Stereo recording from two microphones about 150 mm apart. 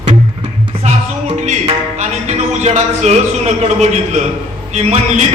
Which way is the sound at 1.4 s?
50° right (ahead or behind).